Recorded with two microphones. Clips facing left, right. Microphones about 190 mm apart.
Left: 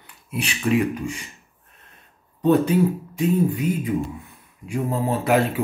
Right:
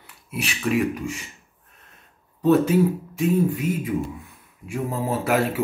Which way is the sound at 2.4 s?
5° right (ahead or behind).